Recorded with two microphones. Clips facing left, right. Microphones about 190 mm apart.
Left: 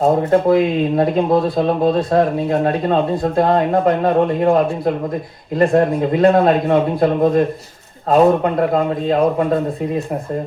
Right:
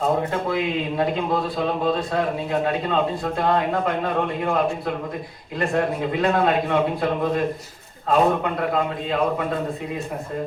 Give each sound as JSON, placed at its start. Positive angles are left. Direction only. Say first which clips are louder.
{"t": 0.3, "sound": "speech", "louder": "left 10 dB", "side_deg": 45}
{"t": 5.5, "sound": "speech", "louder": "left 8 dB", "side_deg": 45}